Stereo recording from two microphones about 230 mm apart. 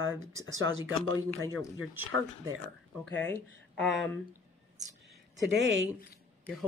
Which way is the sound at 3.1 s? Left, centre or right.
Centre.